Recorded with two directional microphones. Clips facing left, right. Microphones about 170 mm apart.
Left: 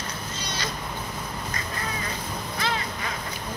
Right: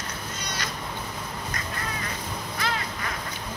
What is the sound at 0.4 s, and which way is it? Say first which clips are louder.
Cat: left 1 dB; 30° left (ahead or behind).